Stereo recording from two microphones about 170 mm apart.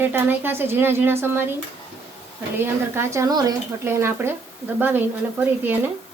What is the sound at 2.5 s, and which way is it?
Speech, 15° right (ahead or behind).